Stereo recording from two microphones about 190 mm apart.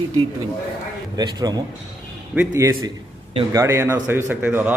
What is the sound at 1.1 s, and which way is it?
A man's voice, 20° right (ahead or behind).